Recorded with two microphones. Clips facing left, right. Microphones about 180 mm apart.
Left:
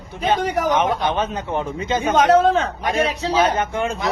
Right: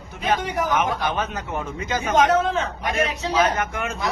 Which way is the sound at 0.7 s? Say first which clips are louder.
Left 3 dB; 30° left (ahead or behind).